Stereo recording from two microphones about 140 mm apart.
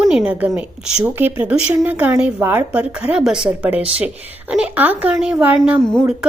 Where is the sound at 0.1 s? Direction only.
5° right (ahead or behind).